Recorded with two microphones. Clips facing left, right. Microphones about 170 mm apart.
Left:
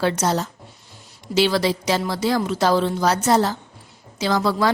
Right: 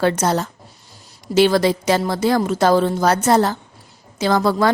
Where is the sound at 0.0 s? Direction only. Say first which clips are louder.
Right 3 dB; 55° right (ahead or behind).